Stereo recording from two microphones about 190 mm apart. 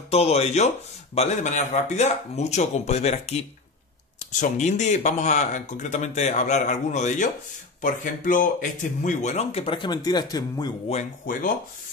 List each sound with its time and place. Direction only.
0.1 s speech: 30° left (ahead or behind)
10.9 s speech: 40° left (ahead or behind)